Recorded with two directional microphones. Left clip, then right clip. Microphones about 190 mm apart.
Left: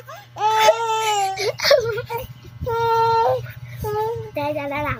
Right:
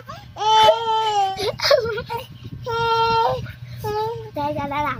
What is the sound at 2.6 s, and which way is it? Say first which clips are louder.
Female singing: left 1 dB; 10° right (ahead or behind).